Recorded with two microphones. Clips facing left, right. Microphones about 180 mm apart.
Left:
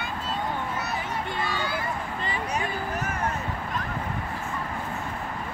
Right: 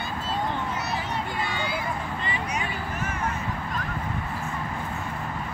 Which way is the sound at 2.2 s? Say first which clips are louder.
Left 1 dB; 35° left (ahead or behind).